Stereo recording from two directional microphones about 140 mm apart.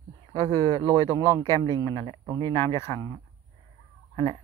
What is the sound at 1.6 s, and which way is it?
Speech, 30° right (ahead or behind).